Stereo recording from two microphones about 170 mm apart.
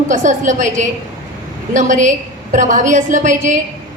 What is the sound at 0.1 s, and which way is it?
A woman's voice, 45° right (ahead or behind).